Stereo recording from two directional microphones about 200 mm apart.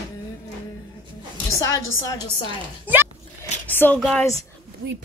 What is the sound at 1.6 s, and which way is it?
Speech, 15° left (ahead or behind).